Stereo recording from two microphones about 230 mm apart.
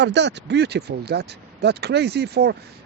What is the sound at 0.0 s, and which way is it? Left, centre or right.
Speech, right.